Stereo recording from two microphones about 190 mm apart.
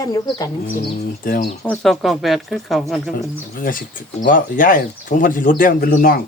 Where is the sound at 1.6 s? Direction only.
Centre (ahead or behind).